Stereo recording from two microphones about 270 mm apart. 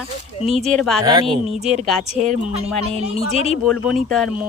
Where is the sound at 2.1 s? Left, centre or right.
Right.